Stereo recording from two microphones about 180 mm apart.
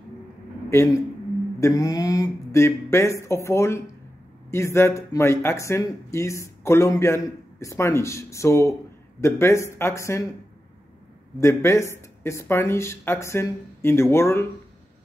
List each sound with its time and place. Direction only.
0.7 s a man's voice: 15° left (ahead or behind)
11.3 s speech: 15° left (ahead or behind)